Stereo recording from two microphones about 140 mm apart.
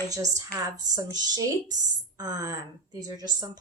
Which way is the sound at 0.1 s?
25° right (ahead or behind).